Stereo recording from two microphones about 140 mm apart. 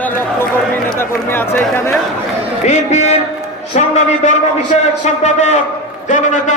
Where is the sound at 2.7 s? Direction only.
55° left (ahead or behind).